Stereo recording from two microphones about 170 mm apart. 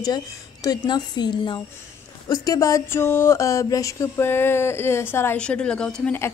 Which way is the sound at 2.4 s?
20° left (ahead or behind).